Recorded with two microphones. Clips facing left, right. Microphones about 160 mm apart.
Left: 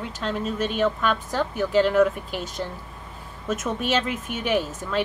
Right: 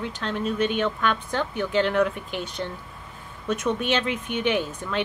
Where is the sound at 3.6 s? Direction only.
5° left (ahead or behind).